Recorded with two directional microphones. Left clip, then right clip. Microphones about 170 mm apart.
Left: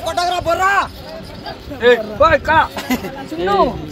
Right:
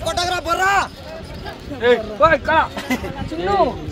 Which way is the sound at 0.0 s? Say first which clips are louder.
Left 3 dB; 30° right (ahead or behind).